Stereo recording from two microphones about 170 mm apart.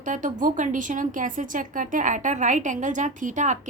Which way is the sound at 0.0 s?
50° right (ahead or behind).